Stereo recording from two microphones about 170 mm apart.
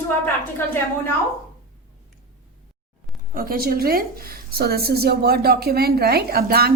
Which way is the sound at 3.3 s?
60° right (ahead or behind).